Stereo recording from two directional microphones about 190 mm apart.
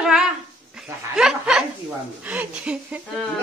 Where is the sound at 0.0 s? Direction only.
5° right (ahead or behind).